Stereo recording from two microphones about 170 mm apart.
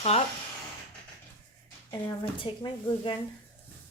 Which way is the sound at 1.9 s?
25° left (ahead or behind).